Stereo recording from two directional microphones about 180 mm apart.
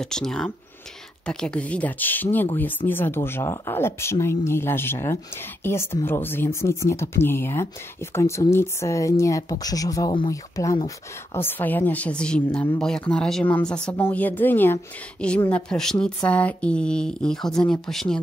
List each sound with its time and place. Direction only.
0.0 s a woman's voice: 5° left (ahead or behind)